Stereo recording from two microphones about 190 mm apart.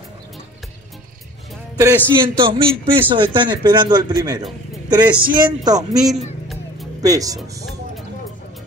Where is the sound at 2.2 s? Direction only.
25° right (ahead or behind).